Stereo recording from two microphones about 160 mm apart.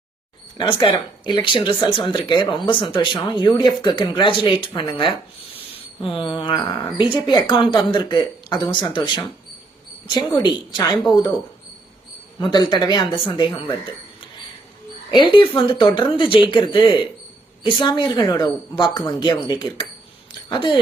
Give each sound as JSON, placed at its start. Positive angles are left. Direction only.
{"t": 0.8, "sound": "speech", "side_deg": 30}
{"t": 12.4, "sound": "speech", "side_deg": 30}
{"t": 15.1, "sound": "speech", "side_deg": 30}